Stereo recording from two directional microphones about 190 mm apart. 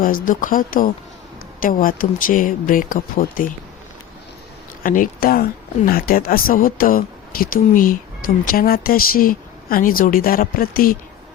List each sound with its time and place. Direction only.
0.0 s speech: 45° left (ahead or behind)
4.8 s speech: 45° left (ahead or behind)